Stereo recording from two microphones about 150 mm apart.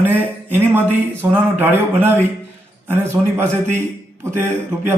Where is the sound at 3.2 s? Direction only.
15° right (ahead or behind).